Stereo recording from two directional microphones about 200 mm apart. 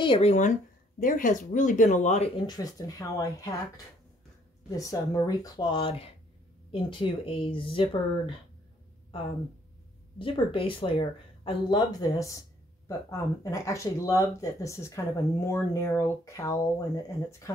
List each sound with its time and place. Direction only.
0.0 s speech: 25° left (ahead or behind)
2.4 s speech: 20° left (ahead or behind)
10.1 s speech: 25° left (ahead or behind)